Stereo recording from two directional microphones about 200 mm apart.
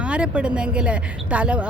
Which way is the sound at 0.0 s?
5° right (ahead or behind).